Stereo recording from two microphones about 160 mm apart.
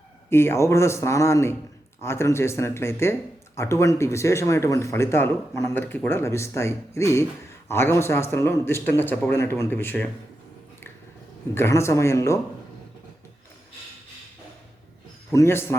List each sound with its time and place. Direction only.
0.3 s speech: 15° left (ahead or behind)
11.5 s speech: 15° left (ahead or behind)
15.3 s speech: 15° left (ahead or behind)